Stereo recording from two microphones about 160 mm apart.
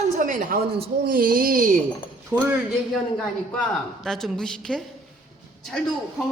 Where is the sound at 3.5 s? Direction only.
Centre (ahead or behind).